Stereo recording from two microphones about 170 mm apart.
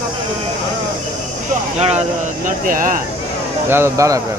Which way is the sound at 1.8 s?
40° right (ahead or behind).